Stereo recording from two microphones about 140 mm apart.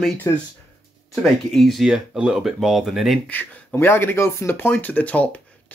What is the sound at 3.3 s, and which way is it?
Speech, 15° left (ahead or behind).